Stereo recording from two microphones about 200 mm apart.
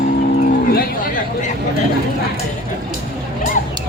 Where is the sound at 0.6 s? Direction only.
40° left (ahead or behind).